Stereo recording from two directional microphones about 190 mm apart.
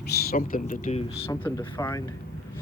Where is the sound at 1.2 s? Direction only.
10° left (ahead or behind).